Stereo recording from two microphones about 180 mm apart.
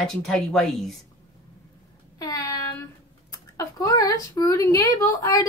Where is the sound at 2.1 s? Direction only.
20° left (ahead or behind).